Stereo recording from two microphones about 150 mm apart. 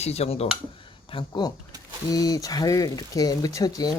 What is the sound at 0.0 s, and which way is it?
Speech, 45° left (ahead or behind).